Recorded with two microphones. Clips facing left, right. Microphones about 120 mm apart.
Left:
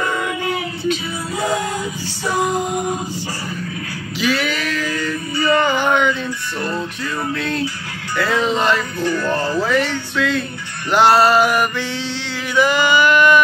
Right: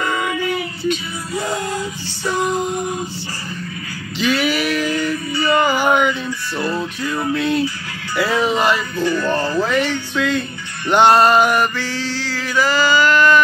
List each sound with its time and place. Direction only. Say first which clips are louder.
4.2 s male singing: right 2 dB; centre (ahead or behind); by 5.6 s 15° right (ahead or behind)
5.6 s a sound: right 4 dB; 5° right (ahead or behind)
6.6 s music: right 2 dB; 5° right (ahead or behind)
11.7 s mantra: even; 25° left (ahead or behind)